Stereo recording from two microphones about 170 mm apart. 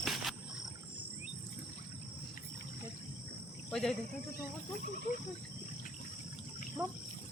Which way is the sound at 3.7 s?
5° left (ahead or behind).